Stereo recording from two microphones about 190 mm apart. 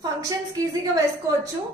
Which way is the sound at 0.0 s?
15° right (ahead or behind).